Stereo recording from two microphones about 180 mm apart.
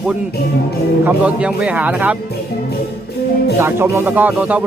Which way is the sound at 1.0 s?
5° right (ahead or behind).